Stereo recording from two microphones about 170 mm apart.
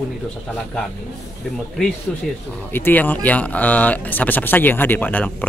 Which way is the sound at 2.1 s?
5° left (ahead or behind).